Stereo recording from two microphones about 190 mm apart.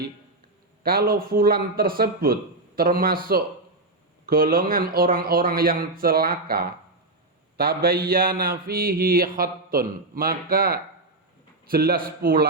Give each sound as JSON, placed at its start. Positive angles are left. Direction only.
{"t": 0.8, "sound": "speech", "side_deg": -50}